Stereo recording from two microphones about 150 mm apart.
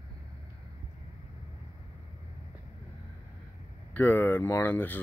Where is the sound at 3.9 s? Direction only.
15° left (ahead or behind).